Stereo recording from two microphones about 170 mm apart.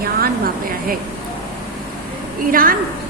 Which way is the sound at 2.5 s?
55° right (ahead or behind).